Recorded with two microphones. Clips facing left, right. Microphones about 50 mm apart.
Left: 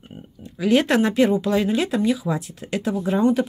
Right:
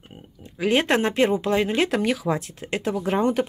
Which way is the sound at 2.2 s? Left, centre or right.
Right.